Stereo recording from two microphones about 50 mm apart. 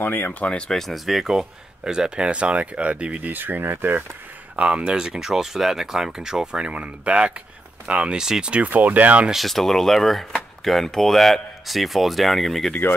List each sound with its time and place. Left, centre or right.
0.0 s speech: left
0.4 s speech: left
0.7 s speech: centre; by 4.0 s right
4.6 s speech: right
8.6 s speech: right
9.3 s speech: centre